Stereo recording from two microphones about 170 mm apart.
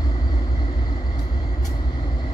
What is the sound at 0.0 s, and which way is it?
Vehicle, 25° left (ahead or behind).